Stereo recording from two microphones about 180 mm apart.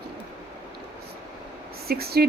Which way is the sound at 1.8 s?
60° right (ahead or behind).